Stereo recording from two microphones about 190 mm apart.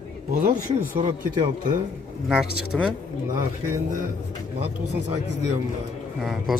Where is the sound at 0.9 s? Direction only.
20° right (ahead or behind).